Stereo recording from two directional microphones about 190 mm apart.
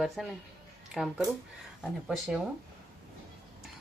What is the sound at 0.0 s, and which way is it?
A woman's voice, centre (ahead or behind).